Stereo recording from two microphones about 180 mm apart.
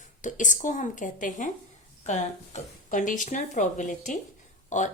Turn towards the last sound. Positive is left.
turn(degrees=45)  # may be behind; listen again after turning